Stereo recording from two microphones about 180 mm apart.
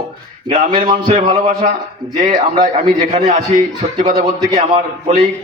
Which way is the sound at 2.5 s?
40° right (ahead or behind).